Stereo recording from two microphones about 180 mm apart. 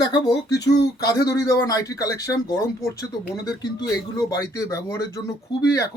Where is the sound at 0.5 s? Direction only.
70° left (ahead or behind).